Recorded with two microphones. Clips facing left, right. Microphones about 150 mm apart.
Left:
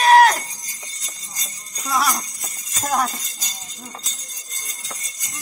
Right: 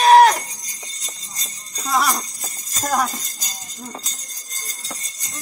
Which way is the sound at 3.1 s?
45° right (ahead or behind).